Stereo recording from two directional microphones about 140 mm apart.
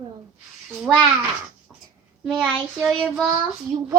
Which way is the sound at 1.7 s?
10° right (ahead or behind).